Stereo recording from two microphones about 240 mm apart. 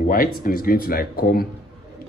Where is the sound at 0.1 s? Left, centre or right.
Left.